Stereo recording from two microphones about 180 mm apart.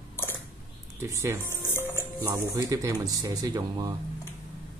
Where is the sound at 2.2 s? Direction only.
15° right (ahead or behind).